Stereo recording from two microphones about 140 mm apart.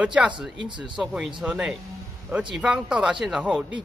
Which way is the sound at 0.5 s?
35° right (ahead or behind).